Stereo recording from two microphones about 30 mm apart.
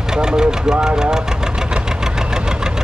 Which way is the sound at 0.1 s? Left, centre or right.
Right.